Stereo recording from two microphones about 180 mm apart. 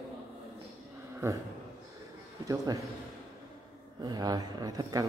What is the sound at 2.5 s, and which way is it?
Speech, 20° right (ahead or behind).